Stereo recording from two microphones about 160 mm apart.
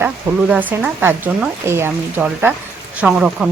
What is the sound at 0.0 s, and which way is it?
Speech, 10° right (ahead or behind).